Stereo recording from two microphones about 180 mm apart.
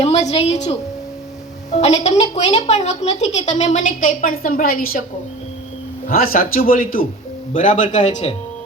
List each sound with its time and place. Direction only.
0.0 s a woman's voice: 35° left (ahead or behind); by 4.9 s 55° left (ahead or behind)
6.1 s a man's voice: 55° left (ahead or behind)